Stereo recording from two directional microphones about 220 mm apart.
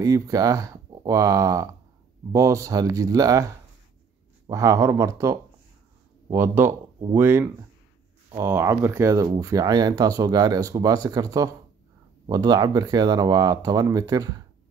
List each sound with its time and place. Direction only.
0.0 s speech: 15° right (ahead or behind)